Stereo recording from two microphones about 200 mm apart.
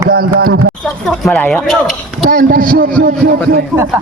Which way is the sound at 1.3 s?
5° left (ahead or behind).